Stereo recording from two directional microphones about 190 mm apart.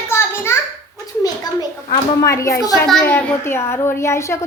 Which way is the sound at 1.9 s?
15° left (ahead or behind).